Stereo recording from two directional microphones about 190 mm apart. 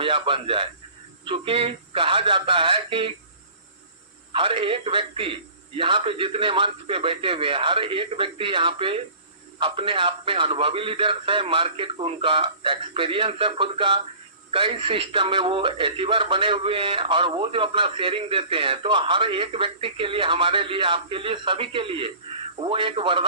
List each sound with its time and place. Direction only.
0.0 s speech: 25° right (ahead or behind)
4.3 s speech: 30° right (ahead or behind)